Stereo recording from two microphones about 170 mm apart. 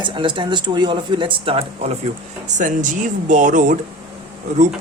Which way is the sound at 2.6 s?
50° right (ahead or behind).